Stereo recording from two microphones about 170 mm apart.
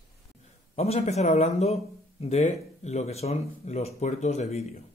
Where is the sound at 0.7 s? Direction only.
40° left (ahead or behind).